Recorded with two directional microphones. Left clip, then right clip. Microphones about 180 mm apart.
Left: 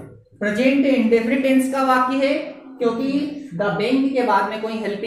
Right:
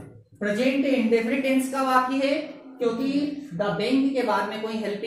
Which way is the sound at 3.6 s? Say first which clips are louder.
Left 4 dB; 5° left (ahead or behind).